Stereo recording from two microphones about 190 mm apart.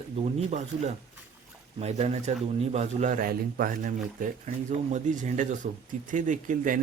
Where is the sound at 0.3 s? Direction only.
35° right (ahead or behind).